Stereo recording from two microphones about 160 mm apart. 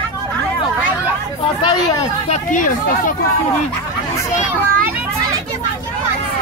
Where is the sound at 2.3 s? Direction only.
55° left (ahead or behind).